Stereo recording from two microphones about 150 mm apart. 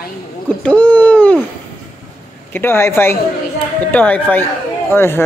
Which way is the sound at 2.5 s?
15° left (ahead or behind).